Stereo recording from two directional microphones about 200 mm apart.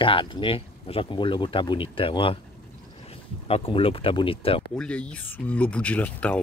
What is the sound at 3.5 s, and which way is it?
Speech, 30° left (ahead or behind).